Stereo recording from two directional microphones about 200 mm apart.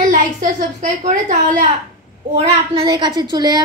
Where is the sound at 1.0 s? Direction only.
40° right (ahead or behind).